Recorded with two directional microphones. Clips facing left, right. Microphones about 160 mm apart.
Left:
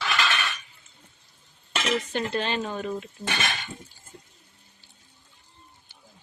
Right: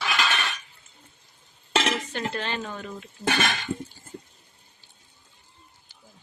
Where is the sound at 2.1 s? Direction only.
20° left (ahead or behind).